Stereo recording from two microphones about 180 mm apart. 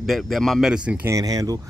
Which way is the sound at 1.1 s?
20° right (ahead or behind).